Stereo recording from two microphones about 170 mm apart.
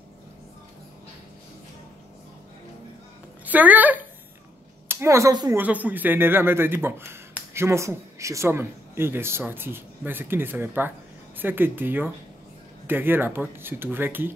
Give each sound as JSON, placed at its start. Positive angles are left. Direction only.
{"t": 3.4, "sound": "a man's voice", "side_deg": -10}
{"t": 5.6, "sound": "a man's voice", "side_deg": -10}